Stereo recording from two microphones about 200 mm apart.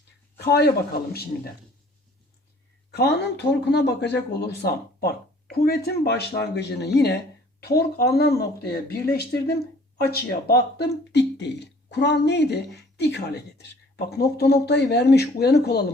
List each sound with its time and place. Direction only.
0.3 s speech: 55° left (ahead or behind)
2.9 s speech: 55° left (ahead or behind)